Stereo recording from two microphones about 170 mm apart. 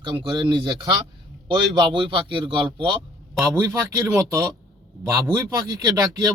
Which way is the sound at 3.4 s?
15° right (ahead or behind).